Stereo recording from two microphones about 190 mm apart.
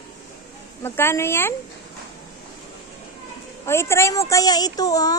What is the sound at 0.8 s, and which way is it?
Speech, 15° left (ahead or behind).